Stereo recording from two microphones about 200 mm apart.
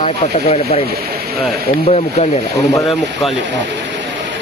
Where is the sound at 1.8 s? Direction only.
35° left (ahead or behind).